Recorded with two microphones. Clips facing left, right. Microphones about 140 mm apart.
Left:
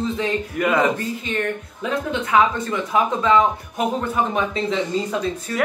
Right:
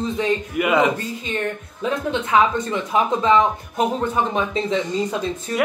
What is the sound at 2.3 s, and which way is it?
Speech, 25° right (ahead or behind).